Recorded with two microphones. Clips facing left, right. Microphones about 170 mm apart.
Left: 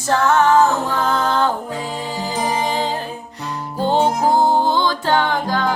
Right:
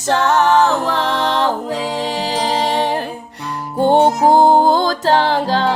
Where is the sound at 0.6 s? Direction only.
75° right (ahead or behind).